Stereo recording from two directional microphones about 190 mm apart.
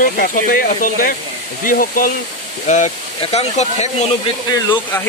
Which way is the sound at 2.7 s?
35° left (ahead or behind).